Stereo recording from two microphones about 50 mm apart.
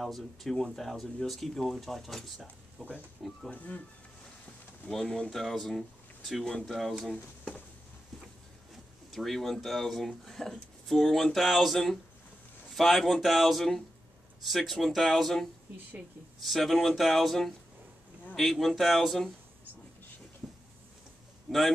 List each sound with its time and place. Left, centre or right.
0.0 s speech: centre
2.8 s speech: right
3.4 s speech: left
4.9 s speech: centre
5.3 s speech: centre
9.1 s speech: centre
21.5 s a man's voice: centre